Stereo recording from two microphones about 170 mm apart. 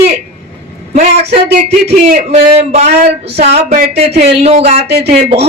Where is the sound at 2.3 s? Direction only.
40° right (ahead or behind).